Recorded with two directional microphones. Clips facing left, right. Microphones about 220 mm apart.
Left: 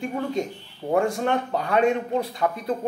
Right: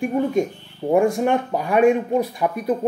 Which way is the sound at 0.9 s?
20° right (ahead or behind).